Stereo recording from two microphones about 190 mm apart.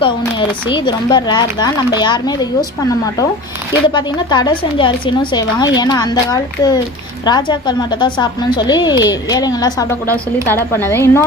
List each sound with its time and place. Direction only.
0.2 s speech: 25° left (ahead or behind)
3.8 s a woman's voice: 25° left (ahead or behind)